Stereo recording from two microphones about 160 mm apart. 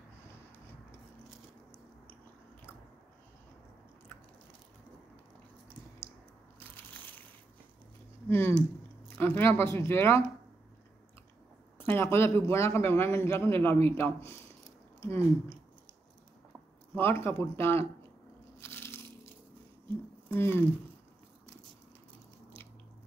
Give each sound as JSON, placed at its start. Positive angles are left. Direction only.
{"t": 6.9, "sound": "a sound", "side_deg": 10}
{"t": 8.3, "sound": "a man's voice", "side_deg": 15}
{"t": 11.8, "sound": "a man's voice", "side_deg": 15}
{"t": 16.9, "sound": "a man's voice", "side_deg": 15}
{"t": 18.6, "sound": "biting", "side_deg": 15}
{"t": 20.3, "sound": "a man's voice", "side_deg": 15}